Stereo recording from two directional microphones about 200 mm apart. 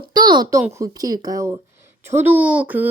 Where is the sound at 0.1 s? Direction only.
20° right (ahead or behind).